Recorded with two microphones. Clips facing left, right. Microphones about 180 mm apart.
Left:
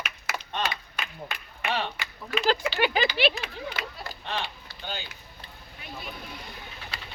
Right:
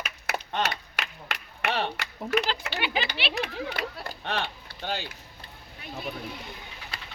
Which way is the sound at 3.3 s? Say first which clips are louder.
Right 4 dB; 60° right (ahead or behind).